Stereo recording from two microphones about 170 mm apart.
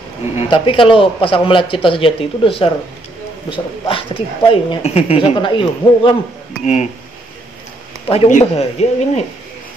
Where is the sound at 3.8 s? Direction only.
30° left (ahead or behind).